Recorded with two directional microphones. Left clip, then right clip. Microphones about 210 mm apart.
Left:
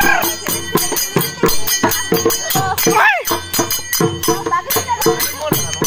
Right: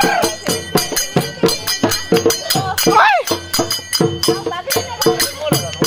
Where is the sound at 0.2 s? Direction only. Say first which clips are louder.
Right 2 dB; 45° left (ahead or behind).